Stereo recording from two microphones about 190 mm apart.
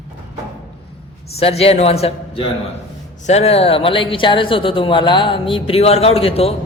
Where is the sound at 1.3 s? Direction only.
30° left (ahead or behind).